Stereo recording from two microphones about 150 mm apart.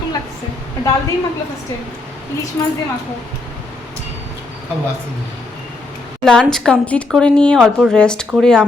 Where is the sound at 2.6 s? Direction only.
20° left (ahead or behind).